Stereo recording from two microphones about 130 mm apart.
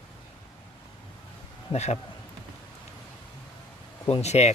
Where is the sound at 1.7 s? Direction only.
55° left (ahead or behind).